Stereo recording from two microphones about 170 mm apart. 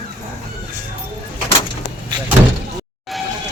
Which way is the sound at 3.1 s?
Centre (ahead or behind).